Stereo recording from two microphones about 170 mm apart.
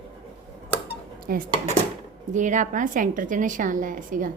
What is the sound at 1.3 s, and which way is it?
Speech, 60° right (ahead or behind).